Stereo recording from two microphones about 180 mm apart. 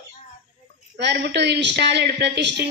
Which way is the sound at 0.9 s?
70° right (ahead or behind).